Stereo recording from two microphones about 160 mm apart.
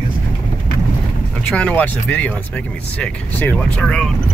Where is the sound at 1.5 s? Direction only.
5° left (ahead or behind).